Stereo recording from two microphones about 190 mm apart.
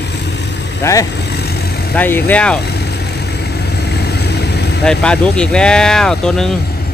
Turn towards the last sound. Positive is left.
turn(degrees=5)  # may be behind; listen again after turning